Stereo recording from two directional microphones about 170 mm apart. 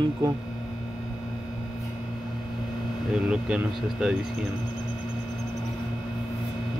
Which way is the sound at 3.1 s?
5° right (ahead or behind).